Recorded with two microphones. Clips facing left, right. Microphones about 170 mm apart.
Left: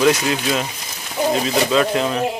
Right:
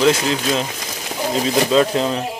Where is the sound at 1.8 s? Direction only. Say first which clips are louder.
Right 1 dB; 25° right (ahead or behind).